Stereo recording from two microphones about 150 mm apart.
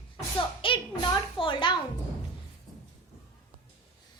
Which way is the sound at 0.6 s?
35° left (ahead or behind).